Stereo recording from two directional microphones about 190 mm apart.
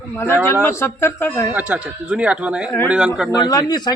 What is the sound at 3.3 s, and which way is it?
Speech, 20° left (ahead or behind).